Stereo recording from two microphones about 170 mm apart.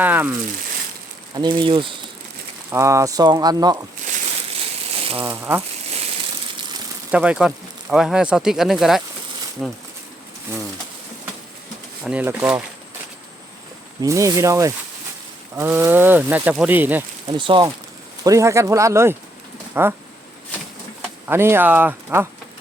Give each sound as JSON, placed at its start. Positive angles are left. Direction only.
{"t": 0.0, "sound": "speech", "side_deg": -10}
{"t": 1.4, "sound": "speech", "side_deg": -25}
{"t": 2.7, "sound": "speech", "side_deg": -15}
{"t": 4.9, "sound": "crushing", "side_deg": -35}
{"t": 5.2, "sound": "speech", "side_deg": -15}
{"t": 6.6, "sound": "frying", "side_deg": -25}
{"t": 7.1, "sound": "speech", "side_deg": -5}
{"t": 12.0, "sound": "speech", "side_deg": -10}
{"t": 14.0, "sound": "speech", "side_deg": -20}
{"t": 17.2, "sound": "speech", "side_deg": -30}
{"t": 18.2, "sound": "speech", "side_deg": -20}
{"t": 21.2, "sound": "speech", "side_deg": -15}